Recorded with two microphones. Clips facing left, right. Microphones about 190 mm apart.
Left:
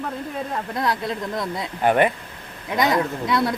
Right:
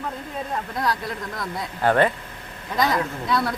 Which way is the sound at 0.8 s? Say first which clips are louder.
Left 3 dB; 20° left (ahead or behind).